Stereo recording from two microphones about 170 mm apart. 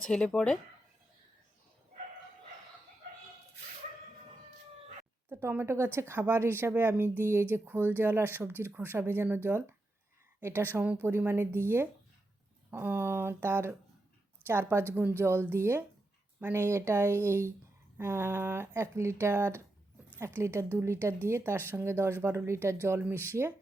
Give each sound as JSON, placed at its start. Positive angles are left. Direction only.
{"t": 0.0, "sound": "speech", "side_deg": 5}
{"t": 5.3, "sound": "speech", "side_deg": -15}
{"t": 12.7, "sound": "speech", "side_deg": -15}